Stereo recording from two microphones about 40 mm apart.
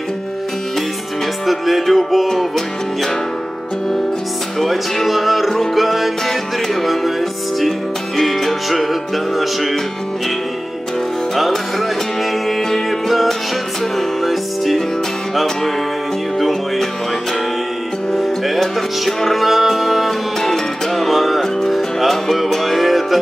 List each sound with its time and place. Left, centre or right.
1.4 s music: centre
4.6 s music: centre
12.4 s music: centre
13.1 s music: centre
16.3 s music: centre
18.1 s music: centre